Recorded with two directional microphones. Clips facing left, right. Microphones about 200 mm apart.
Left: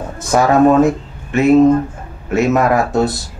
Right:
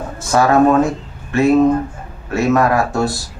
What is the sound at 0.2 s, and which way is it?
Speech, 20° left (ahead or behind).